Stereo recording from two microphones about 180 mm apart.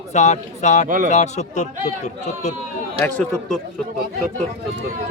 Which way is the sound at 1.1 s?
40° left (ahead or behind).